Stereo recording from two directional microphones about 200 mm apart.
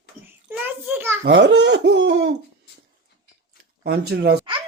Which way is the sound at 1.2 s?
65° right (ahead or behind).